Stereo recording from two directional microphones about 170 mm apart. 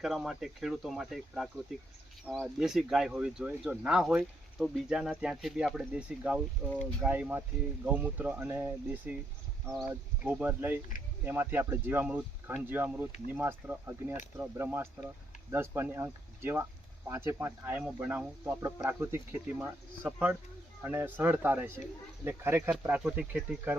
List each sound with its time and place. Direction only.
0.0 s speech: centre (ahead or behind)